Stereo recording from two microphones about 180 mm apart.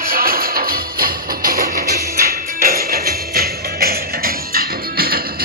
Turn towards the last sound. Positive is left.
turn(degrees=-55)  # may be behind; listen again after turning